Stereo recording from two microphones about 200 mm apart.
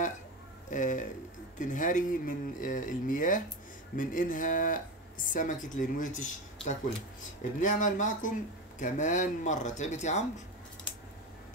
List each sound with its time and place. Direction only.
0.7 s speech: 40° left (ahead or behind)